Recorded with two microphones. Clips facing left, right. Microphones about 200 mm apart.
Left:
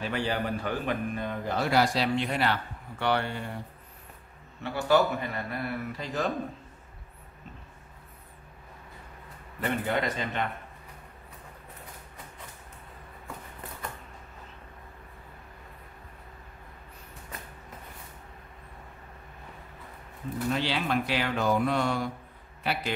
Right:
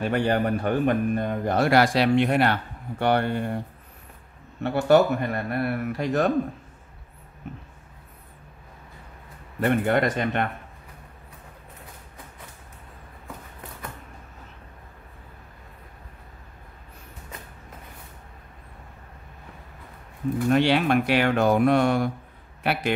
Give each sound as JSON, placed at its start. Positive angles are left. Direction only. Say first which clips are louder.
{"t": 0.0, "sound": "a man's voice", "louder": "right 7 dB", "side_deg": -55}
{"t": 4.6, "sound": "a man's voice", "louder": "right 6 dB", "side_deg": -60}
{"t": 9.6, "sound": "a man's voice", "louder": "right 7 dB", "side_deg": -55}
{"t": 20.4, "sound": "a man's voice", "louder": "right 9 dB", "side_deg": -60}